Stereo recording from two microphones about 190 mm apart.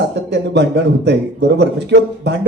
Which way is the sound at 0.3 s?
65° right (ahead or behind).